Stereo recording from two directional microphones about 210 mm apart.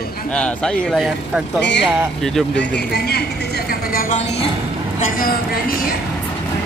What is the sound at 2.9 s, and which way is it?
Speech, 50° left (ahead or behind).